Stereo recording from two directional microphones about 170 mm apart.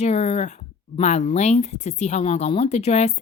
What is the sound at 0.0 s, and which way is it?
Speech, 40° left (ahead or behind).